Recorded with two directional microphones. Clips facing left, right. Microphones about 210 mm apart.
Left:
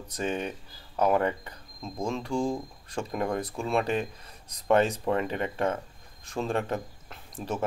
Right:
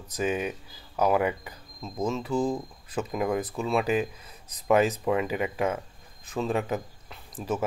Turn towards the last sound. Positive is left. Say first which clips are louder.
# right 3 dB
turn(degrees=0)  # may be behind; listen again after turning